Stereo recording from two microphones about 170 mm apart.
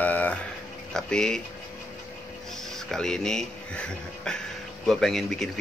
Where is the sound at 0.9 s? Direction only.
5° left (ahead or behind).